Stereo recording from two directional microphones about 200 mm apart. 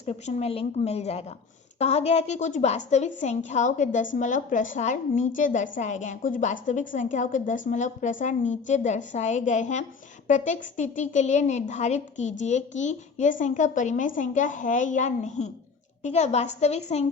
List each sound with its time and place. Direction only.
0.0 s a woman's voice: 35° left (ahead or behind)